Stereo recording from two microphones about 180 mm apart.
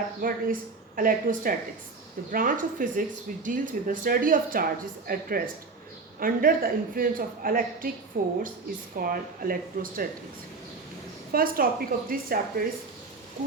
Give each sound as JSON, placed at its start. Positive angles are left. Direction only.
{"t": 0.2, "sound": "a woman's voice", "side_deg": -50}
{"t": 11.3, "sound": "a woman's voice", "side_deg": -55}